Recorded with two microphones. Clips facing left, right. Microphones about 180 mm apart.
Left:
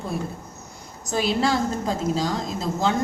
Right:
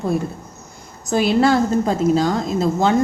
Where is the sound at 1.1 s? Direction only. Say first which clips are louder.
Right 7 dB; 60° right (ahead or behind).